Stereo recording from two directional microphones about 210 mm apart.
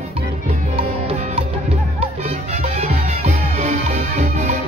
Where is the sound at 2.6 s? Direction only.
35° right (ahead or behind).